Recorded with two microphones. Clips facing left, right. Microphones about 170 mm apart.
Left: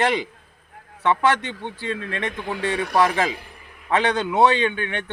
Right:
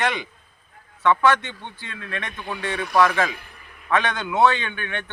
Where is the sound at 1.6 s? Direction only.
35° left (ahead or behind).